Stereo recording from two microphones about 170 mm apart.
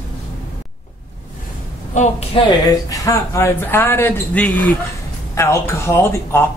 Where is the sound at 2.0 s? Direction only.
35° left (ahead or behind).